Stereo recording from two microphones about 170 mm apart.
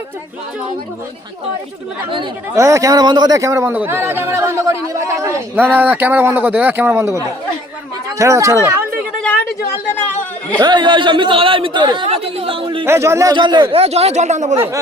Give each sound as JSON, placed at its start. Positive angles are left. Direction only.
{"t": 2.6, "sound": "a man's voice", "side_deg": -20}
{"t": 10.6, "sound": "speech", "side_deg": -25}
{"t": 12.8, "sound": "speech", "side_deg": -15}